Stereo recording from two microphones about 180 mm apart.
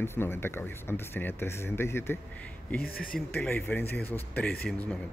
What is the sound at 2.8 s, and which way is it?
Speech, 55° left (ahead or behind).